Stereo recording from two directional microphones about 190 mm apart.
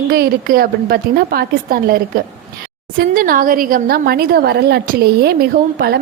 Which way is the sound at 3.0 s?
50° right (ahead or behind).